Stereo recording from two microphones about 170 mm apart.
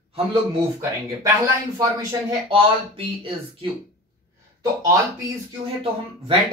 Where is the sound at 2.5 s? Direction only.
30° right (ahead or behind).